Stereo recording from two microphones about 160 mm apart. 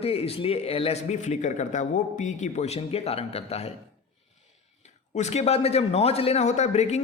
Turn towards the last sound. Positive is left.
turn(degrees=45)  # may be behind; listen again after turning